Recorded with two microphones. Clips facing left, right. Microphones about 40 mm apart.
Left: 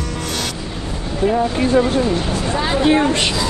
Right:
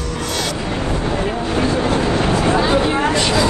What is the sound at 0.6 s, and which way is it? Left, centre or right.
Vehicle, right.